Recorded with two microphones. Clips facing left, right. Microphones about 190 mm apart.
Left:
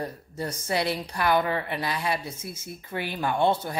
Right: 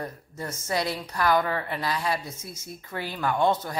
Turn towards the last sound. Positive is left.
turn(degrees=30)  # may be behind; listen again after turning